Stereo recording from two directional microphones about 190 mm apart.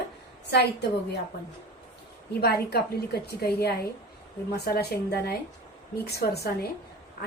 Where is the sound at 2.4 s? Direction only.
55° left (ahead or behind).